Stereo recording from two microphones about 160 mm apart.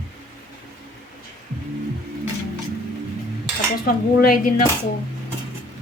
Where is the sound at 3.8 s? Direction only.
65° left (ahead or behind).